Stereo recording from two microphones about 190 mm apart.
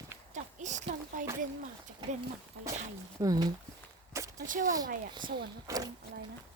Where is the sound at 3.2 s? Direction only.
20° right (ahead or behind).